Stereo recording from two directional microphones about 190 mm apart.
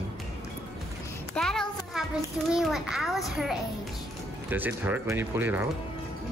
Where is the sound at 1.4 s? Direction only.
Centre (ahead or behind).